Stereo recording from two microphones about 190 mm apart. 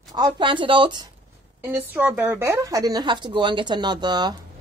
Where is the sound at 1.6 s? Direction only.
10° right (ahead or behind).